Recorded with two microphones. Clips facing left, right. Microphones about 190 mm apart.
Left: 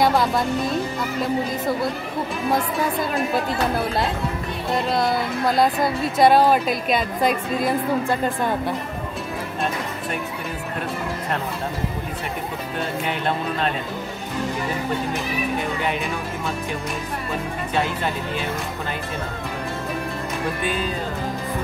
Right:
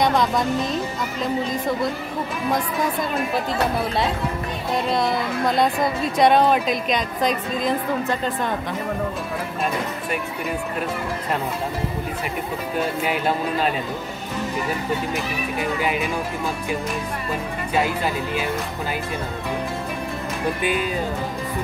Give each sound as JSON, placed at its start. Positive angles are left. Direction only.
{"t": 0.0, "sound": "a woman's voice", "side_deg": 5}
{"t": 4.8, "sound": "a woman's voice", "side_deg": 0}
{"t": 13.0, "sound": "a woman's voice", "side_deg": -5}
{"t": 17.7, "sound": "a woman's voice", "side_deg": -5}
{"t": 20.6, "sound": "speech", "side_deg": -15}